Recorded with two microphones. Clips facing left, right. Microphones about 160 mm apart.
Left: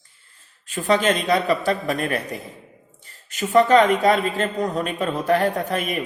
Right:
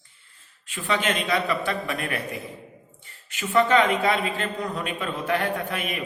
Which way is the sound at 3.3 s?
40° left (ahead or behind).